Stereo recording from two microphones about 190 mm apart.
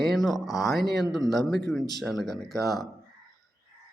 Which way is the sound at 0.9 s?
Centre (ahead or behind).